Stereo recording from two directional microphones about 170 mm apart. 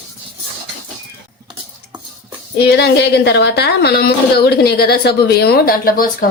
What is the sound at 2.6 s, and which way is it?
A woman's voice, 75° left (ahead or behind).